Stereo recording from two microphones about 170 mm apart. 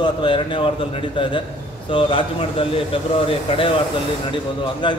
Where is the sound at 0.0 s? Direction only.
30° left (ahead or behind).